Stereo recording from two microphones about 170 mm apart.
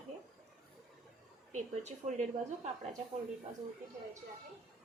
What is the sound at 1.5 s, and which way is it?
Speech, 45° right (ahead or behind).